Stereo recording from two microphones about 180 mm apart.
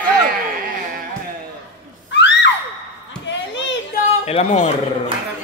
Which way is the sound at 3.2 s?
80° left.